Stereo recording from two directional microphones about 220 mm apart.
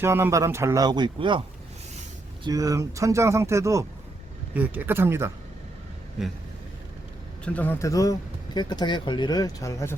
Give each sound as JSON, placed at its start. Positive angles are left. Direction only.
{"t": 0.0, "sound": "speech", "side_deg": -10}
{"t": 2.5, "sound": "speech", "side_deg": -15}
{"t": 7.4, "sound": "speech", "side_deg": 5}